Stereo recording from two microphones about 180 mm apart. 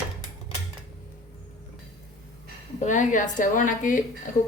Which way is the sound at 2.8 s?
45° left (ahead or behind).